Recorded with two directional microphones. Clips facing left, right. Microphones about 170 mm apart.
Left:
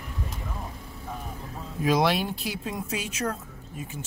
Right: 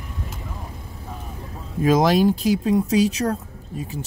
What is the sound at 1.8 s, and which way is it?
Speech, 45° right (ahead or behind).